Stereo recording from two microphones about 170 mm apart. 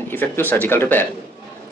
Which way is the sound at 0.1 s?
10° left (ahead or behind).